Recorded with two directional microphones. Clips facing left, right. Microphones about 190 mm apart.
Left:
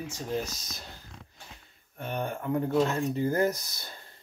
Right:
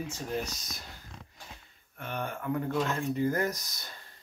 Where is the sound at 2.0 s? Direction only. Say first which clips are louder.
Left 3 dB; 35° left (ahead or behind).